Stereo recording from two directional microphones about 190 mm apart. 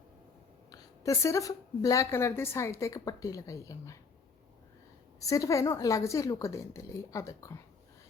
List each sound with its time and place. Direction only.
0.7 s a woman's voice: 15° left (ahead or behind)
5.2 s a woman's voice: 15° left (ahead or behind)